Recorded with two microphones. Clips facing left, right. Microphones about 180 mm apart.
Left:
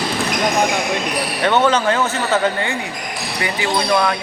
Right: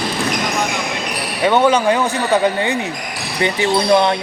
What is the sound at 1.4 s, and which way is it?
A man's voice, 10° right (ahead or behind).